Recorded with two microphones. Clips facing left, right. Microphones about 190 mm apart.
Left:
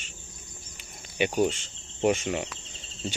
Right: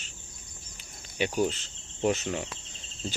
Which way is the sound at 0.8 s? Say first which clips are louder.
Left 3 dB; 60° left (ahead or behind).